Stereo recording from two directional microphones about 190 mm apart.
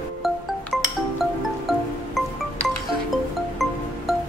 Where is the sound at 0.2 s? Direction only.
Centre (ahead or behind).